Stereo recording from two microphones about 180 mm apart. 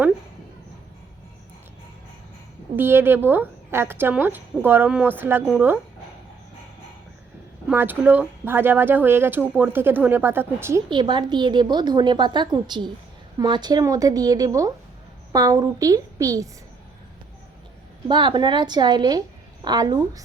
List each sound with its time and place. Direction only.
2.7 s speech: 10° right (ahead or behind)
7.7 s speech: 10° right (ahead or behind)
10.8 s a woman's voice: 25° right (ahead or behind)
18.1 s a woman's voice: 25° right (ahead or behind)